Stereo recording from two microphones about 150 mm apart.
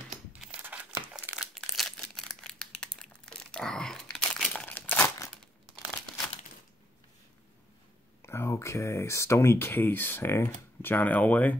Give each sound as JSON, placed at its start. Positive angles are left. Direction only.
{"t": 0.3, "sound": "crumpling", "side_deg": -10}
{"t": 8.2, "sound": "speech", "side_deg": 15}